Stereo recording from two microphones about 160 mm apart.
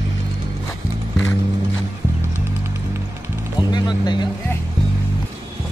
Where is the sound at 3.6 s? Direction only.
25° left (ahead or behind).